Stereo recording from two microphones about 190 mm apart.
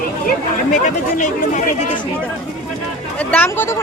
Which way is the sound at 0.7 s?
40° left (ahead or behind).